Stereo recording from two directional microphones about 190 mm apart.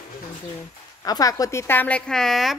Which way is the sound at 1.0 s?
20° left (ahead or behind).